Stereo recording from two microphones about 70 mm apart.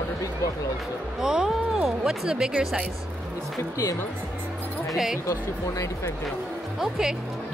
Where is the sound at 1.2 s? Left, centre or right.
Centre.